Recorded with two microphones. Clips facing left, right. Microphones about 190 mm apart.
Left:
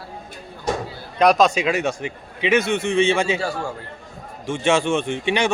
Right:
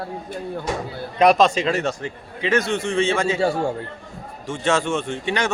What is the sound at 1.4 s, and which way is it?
A man's voice, 10° left (ahead or behind).